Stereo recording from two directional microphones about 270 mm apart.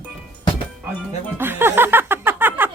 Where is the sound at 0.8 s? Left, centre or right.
Centre.